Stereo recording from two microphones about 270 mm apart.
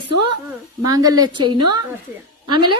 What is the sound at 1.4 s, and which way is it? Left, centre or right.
A woman's voice, right.